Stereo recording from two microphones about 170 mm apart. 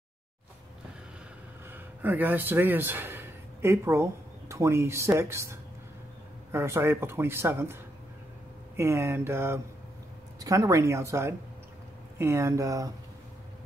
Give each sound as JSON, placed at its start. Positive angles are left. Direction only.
{"t": 1.7, "sound": "speech", "side_deg": -10}